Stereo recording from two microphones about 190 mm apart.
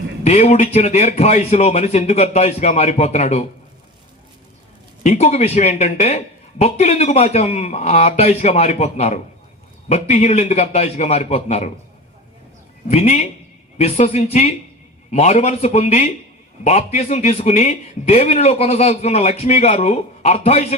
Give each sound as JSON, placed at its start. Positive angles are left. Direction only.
{"t": 0.3, "sound": "speech", "side_deg": 35}
{"t": 5.0, "sound": "speech", "side_deg": 35}
{"t": 12.9, "sound": "speech", "side_deg": 35}